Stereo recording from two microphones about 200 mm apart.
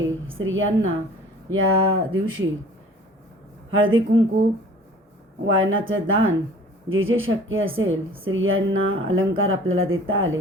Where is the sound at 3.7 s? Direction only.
80° right.